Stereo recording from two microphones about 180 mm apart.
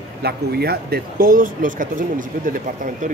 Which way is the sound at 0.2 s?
60° right (ahead or behind).